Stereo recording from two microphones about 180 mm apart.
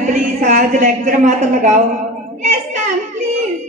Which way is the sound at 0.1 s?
40° right (ahead or behind).